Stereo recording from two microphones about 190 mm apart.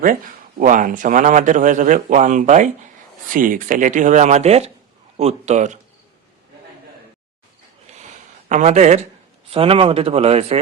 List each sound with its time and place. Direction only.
0.6 s a man's voice: 45° right (ahead or behind)
7.9 s a sound: 35° right (ahead or behind)
8.4 s a man's voice: 40° right (ahead or behind)